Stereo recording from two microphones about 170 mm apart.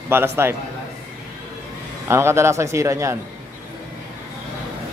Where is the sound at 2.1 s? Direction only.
15° right (ahead or behind).